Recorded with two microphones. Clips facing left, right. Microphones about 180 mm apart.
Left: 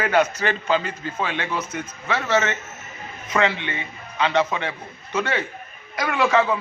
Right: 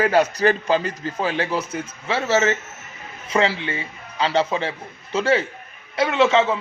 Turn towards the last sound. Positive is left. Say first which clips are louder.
# right 2 dB
turn(degrees=-25)  # may be behind; listen again after turning